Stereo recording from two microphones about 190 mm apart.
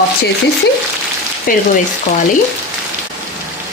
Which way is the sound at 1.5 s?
45° left (ahead or behind).